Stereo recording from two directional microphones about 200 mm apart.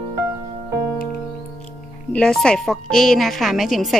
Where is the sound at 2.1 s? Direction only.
5° left (ahead or behind).